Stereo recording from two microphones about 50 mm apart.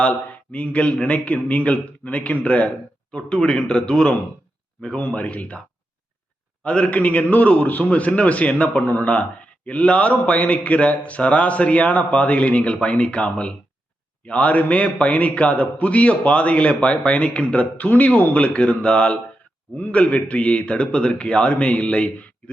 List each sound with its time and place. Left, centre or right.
0.0 s a man's voice: left
3.1 s speech: centre
5.1 s a man's voice: left
6.6 s a man's voice: left
19.7 s a man's voice: left